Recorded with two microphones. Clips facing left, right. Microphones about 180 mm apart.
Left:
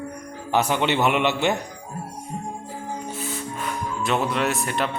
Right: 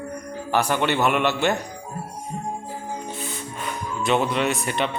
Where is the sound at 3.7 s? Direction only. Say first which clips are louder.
Right 2 dB; centre (ahead or behind).